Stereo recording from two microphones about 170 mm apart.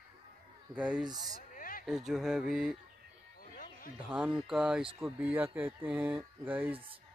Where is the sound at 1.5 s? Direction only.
55° left (ahead or behind).